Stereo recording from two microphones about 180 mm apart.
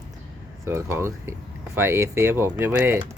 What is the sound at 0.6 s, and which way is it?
Speech, 15° right (ahead or behind).